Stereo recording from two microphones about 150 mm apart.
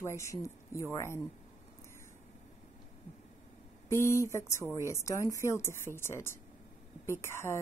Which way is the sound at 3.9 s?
15° left (ahead or behind).